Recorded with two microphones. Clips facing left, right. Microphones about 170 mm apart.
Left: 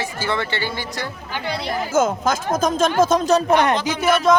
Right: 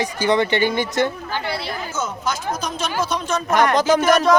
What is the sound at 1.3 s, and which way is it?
Speech, 20° left (ahead or behind).